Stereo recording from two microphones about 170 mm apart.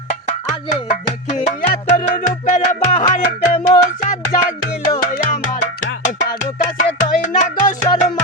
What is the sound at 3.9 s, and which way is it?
Music, 45° left (ahead or behind).